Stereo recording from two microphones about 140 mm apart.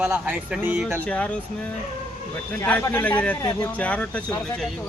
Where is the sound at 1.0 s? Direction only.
10° left (ahead or behind).